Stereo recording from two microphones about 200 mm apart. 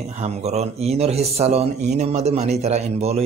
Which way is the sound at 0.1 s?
30° right (ahead or behind).